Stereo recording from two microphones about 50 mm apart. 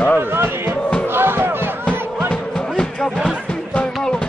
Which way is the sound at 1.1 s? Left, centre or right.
Right.